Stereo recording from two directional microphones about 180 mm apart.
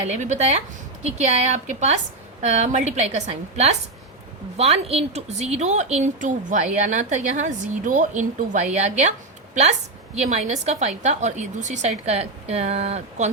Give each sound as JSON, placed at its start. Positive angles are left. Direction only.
{"t": 0.0, "sound": "a woman's voice", "side_deg": -40}
{"t": 10.2, "sound": "a woman's voice", "side_deg": -40}